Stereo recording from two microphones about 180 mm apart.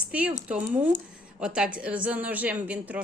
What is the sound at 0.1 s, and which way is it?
A woman's voice, 5° right (ahead or behind).